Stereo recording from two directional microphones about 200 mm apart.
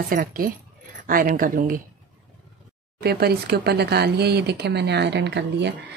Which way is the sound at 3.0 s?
50° right (ahead or behind).